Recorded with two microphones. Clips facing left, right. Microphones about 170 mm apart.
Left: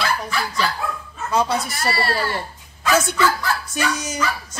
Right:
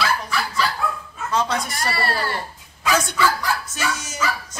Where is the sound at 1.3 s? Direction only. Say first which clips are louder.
Left 2 dB; 10° left (ahead or behind).